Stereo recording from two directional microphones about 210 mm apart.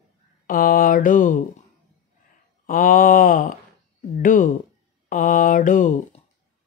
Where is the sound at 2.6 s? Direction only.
40° left (ahead or behind).